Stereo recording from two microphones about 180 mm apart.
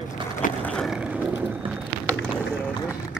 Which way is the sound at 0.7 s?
Centre (ahead or behind).